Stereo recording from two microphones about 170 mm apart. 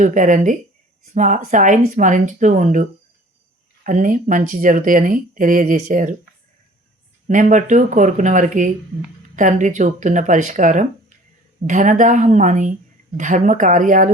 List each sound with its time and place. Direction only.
0.0 s speech: 50° right (ahead or behind)
3.8 s speech: 50° right (ahead or behind)
7.3 s speech: 45° right (ahead or behind)